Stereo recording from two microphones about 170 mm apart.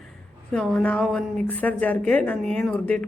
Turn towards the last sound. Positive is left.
turn(degrees=10)  # may be behind; listen again after turning